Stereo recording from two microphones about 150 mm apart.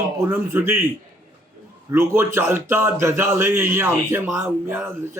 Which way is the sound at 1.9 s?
15° right (ahead or behind).